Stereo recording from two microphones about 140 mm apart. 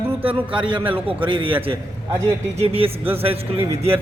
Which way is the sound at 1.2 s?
35° right (ahead or behind).